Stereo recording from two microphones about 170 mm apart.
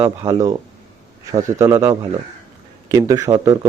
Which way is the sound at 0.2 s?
20° right (ahead or behind).